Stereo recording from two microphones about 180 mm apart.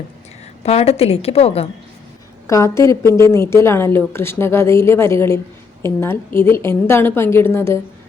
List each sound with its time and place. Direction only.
0.6 s a woman's voice: 35° left (ahead or behind)
2.5 s a woman's voice: 15° left (ahead or behind)